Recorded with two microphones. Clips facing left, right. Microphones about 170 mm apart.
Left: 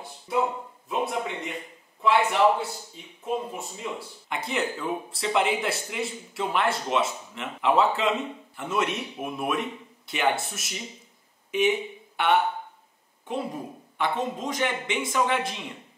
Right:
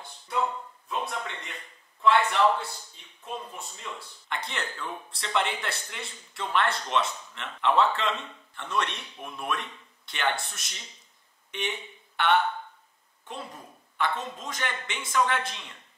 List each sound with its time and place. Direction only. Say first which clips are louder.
0.0 s a sound: left 3 dB; 5° left (ahead or behind)
2.1 s a man's voice: left 5 dB; 15° left (ahead or behind)
13.3 s a man's voice: left 9 dB; 15° left (ahead or behind)